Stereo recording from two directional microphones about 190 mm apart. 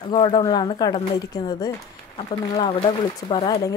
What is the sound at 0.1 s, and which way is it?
A woman's voice, 20° left (ahead or behind).